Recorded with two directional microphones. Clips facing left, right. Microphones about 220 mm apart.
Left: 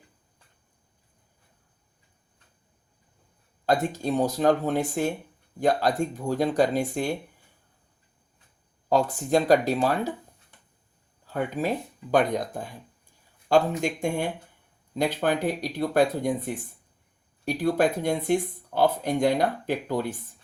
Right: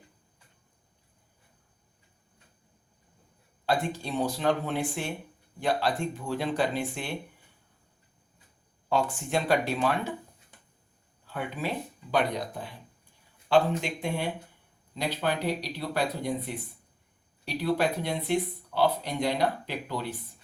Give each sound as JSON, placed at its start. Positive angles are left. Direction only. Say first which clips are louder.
{"t": 3.7, "sound": "speech", "louder": "left 5 dB", "side_deg": 45}
{"t": 8.9, "sound": "speech", "louder": "left 5 dB", "side_deg": 40}
{"t": 11.3, "sound": "speech", "louder": "left 6 dB", "side_deg": 40}